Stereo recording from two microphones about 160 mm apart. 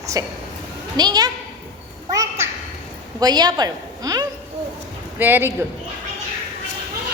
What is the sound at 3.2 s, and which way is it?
A woman's voice, 25° right (ahead or behind).